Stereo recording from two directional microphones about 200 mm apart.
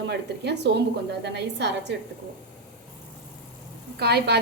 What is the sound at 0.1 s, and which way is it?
A woman's voice, 60° right (ahead or behind).